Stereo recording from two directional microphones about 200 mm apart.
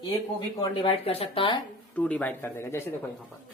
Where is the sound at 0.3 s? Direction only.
25° left (ahead or behind).